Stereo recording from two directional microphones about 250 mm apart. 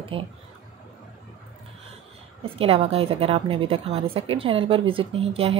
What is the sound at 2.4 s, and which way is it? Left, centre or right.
A woman's voice, right.